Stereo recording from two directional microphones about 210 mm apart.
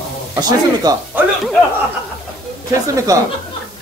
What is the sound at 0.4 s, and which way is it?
Speech, 15° right (ahead or behind).